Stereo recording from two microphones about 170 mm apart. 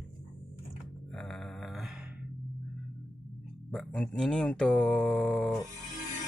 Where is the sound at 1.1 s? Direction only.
5° left (ahead or behind).